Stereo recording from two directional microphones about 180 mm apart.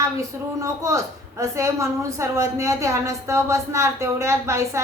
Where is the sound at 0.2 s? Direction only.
15° right (ahead or behind).